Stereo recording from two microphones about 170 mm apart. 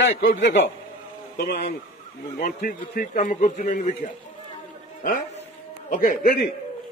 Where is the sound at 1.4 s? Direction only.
75° left (ahead or behind).